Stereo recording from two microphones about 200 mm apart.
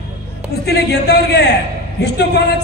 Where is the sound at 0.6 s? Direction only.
55° left (ahead or behind).